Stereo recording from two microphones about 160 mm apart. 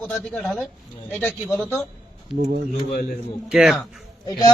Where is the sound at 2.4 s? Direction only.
55° right (ahead or behind).